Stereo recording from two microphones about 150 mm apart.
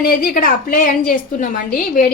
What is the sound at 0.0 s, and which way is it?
A woman's voice, 75° left (ahead or behind).